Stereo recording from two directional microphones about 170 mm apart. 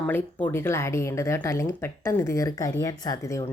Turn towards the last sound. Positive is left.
turn(degrees=20)  # may be behind; listen again after turning